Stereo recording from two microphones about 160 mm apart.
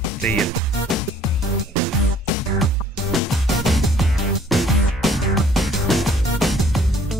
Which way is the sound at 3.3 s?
Centre (ahead or behind).